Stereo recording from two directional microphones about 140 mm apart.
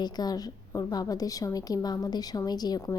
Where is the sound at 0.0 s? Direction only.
30° left (ahead or behind).